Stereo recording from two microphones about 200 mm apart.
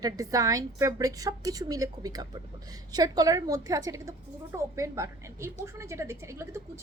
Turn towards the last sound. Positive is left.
turn(degrees=-15)  # may be behind; listen again after turning